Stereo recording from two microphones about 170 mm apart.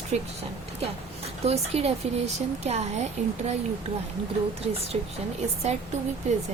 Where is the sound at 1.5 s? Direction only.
40° right (ahead or behind).